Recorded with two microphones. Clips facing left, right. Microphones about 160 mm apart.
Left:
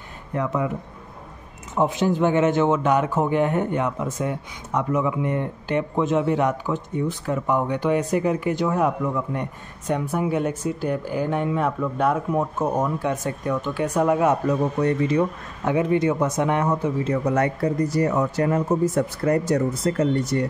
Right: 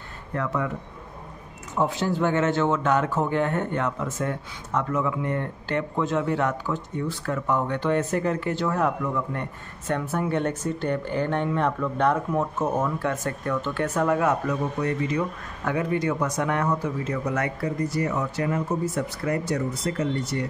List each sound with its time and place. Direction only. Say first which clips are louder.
0.3 s a man's voice: left 3 dB; 20° left (ahead or behind)
1.8 s a man's voice: left 4 dB; 20° left (ahead or behind)
14.8 s speech: left 6 dB; 30° left (ahead or behind); by 20.5 s 45° left (ahead or behind)